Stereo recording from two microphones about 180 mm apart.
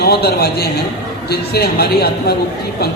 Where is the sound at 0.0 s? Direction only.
60° left (ahead or behind).